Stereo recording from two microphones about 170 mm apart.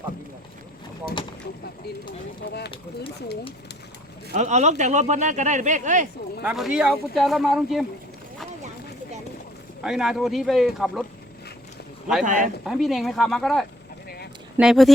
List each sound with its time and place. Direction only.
4.4 s speech: 45° right (ahead or behind)
6.4 s speech: 5° right (ahead or behind)
9.8 s speech: centre (ahead or behind)
12.2 s speech: 50° right (ahead or behind)
12.6 s speech: centre (ahead or behind)